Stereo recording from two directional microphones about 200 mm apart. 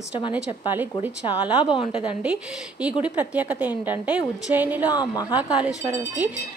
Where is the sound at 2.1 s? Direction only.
5° right (ahead or behind).